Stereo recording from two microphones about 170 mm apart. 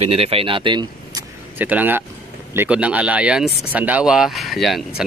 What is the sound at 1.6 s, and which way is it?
Speech, 10° right (ahead or behind).